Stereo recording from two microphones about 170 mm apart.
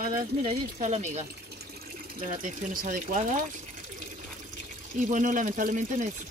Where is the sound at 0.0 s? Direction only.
55° right (ahead or behind).